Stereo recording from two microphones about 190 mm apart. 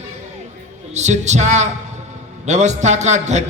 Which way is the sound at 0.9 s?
35° right (ahead or behind).